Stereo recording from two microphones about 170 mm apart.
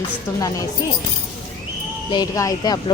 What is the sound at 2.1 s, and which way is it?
Speech, 20° left (ahead or behind).